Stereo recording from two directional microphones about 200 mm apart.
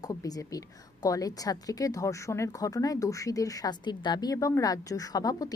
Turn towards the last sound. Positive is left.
turn(degrees=20)  # may be behind; listen again after turning